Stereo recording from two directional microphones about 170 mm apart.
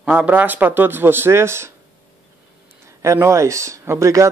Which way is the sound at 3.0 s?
15° right (ahead or behind).